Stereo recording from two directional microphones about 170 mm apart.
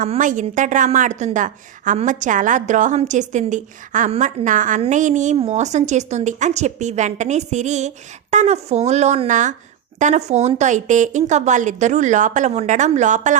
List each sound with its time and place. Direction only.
0.0 s a woman's voice: 50° right (ahead or behind)